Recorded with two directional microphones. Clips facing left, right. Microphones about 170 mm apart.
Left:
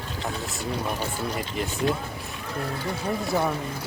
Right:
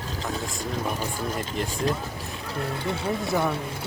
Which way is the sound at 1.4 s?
Centre (ahead or behind).